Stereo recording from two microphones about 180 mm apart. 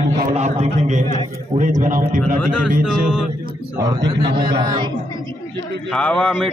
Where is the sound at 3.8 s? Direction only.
20° right (ahead or behind).